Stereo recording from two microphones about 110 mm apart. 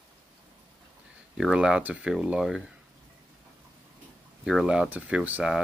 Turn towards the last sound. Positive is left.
turn(degrees=-10)  # may be behind; listen again after turning